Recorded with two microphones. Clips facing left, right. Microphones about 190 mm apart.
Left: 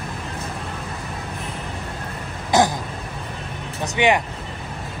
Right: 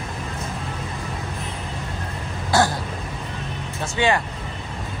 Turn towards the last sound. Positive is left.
turn(degrees=15)  # may be behind; listen again after turning